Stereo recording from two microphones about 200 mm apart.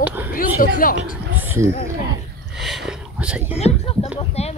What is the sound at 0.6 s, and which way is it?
Speech, 40° left (ahead or behind).